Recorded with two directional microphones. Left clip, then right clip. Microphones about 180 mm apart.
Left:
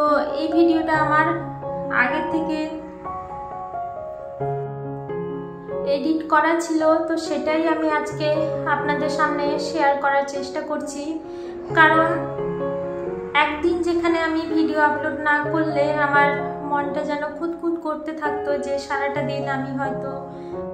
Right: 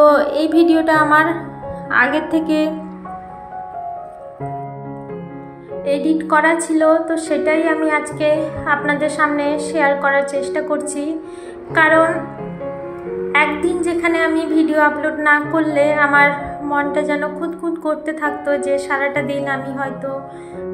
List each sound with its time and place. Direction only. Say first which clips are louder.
0.0 s a woman's voice: right 8 dB; 35° right (ahead or behind)
1.9 s music: right 5 dB; 35° right (ahead or behind)
5.9 s a woman's voice: right 4 dB; 25° right (ahead or behind)
13.3 s a woman's voice: right 4 dB; 25° right (ahead or behind)